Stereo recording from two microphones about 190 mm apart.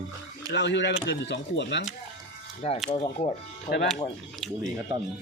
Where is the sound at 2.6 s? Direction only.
35° left (ahead or behind).